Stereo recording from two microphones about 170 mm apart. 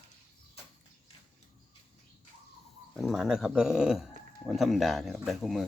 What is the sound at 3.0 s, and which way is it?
Speech, centre (ahead or behind).